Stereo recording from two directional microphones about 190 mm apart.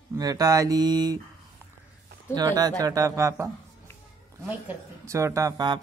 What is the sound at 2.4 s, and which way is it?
Speech, 20° right (ahead or behind).